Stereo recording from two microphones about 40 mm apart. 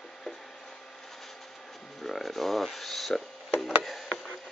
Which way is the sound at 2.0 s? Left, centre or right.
Centre.